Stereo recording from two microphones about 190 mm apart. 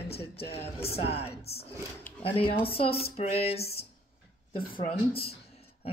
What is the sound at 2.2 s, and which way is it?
Speech, 30° left (ahead or behind).